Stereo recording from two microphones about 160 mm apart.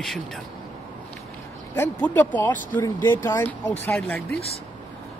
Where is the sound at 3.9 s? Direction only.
5° left (ahead or behind).